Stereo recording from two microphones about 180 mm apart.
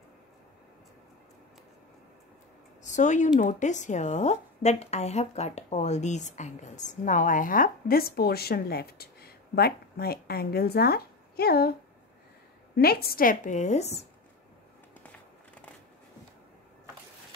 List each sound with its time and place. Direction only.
2.8 s speech: 45° left (ahead or behind); by 11.7 s 60° left (ahead or behind)
12.7 s speech: 60° left (ahead or behind); by 14.0 s 35° left (ahead or behind)